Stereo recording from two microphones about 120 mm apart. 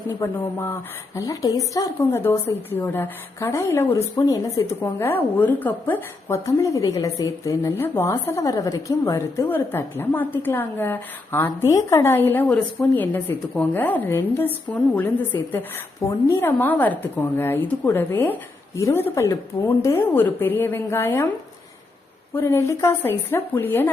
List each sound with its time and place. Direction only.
0.3 s a woman's voice: 20° left (ahead or behind)
22.4 s speech: 25° left (ahead or behind)